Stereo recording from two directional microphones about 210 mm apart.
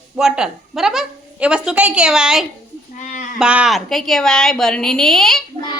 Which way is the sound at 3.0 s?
35° left (ahead or behind).